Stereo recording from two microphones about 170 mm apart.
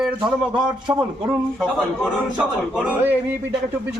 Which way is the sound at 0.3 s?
25° right (ahead or behind).